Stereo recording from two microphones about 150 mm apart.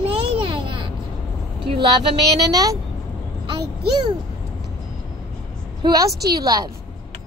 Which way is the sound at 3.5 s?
30° right (ahead or behind).